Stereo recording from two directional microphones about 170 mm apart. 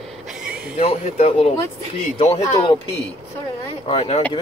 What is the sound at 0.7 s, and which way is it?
Speech, 35° left (ahead or behind).